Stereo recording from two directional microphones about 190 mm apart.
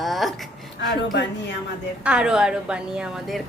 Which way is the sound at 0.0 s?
Centre (ahead or behind).